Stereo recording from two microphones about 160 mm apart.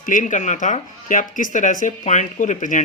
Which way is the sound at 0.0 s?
55° left (ahead or behind).